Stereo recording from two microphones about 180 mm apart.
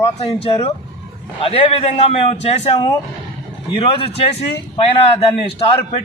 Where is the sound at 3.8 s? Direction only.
30° left (ahead or behind).